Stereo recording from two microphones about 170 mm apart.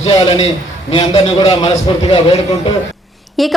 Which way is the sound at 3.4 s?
Centre (ahead or behind).